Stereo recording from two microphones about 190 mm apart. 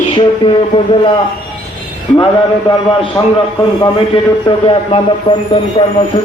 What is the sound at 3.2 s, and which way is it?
A man's voice, 20° left (ahead or behind).